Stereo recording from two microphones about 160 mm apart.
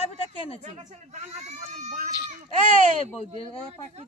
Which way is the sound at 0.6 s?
50° right (ahead or behind).